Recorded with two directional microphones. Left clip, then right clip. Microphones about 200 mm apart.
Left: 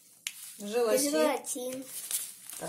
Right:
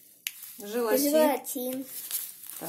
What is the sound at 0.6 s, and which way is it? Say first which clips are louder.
Speech: right 1 dB; 20° right (ahead or behind).